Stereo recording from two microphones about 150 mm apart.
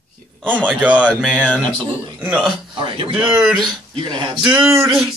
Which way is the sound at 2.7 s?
35° right (ahead or behind).